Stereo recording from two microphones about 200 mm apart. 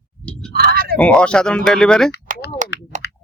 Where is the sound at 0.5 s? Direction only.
50° right (ahead or behind).